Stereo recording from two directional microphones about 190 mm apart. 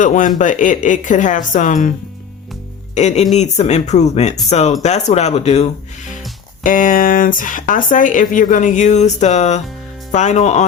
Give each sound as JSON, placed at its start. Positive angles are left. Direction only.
{"t": 0.0, "sound": "speech", "side_deg": 40}
{"t": 2.9, "sound": "speech", "side_deg": 35}